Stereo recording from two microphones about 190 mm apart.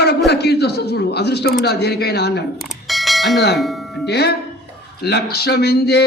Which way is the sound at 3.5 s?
Centre (ahead or behind).